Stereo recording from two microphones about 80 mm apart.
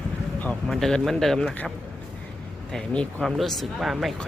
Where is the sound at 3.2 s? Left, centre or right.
Centre.